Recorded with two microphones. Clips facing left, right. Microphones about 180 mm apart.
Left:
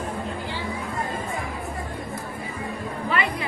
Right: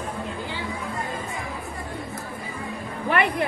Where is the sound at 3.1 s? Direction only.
60° right (ahead or behind).